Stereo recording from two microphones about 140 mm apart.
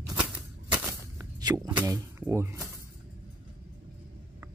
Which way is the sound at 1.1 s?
30° right (ahead or behind).